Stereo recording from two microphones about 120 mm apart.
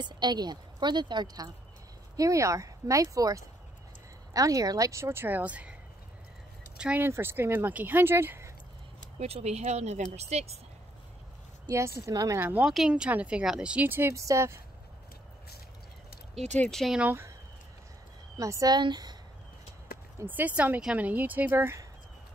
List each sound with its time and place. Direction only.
0.0 s a woman's voice: 35° right (ahead or behind); by 5.8 s 10° right (ahead or behind)
6.8 s speech: 10° right (ahead or behind)
9.2 s speech: 65° right (ahead or behind)
11.6 s speech: 25° right (ahead or behind)
12.4 s speech: 15° right (ahead or behind)
16.5 s speech: 10° left (ahead or behind)
16.8 s speech: 5° right (ahead or behind)
18.4 s a woman's voice: 30° right (ahead or behind)
20.2 s speech: 15° right (ahead or behind)